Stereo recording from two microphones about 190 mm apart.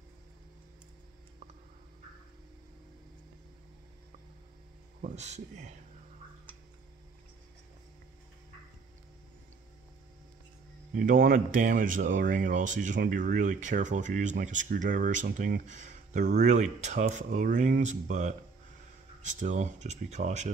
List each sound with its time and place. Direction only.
5.0 s speech: 35° right (ahead or behind)
11.0 s speech: 50° right (ahead or behind)